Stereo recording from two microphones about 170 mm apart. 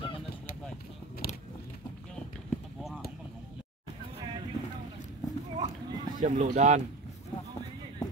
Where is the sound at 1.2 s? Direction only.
65° left (ahead or behind).